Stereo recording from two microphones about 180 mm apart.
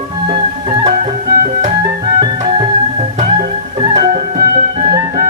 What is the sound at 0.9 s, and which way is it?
Music, 45° right (ahead or behind).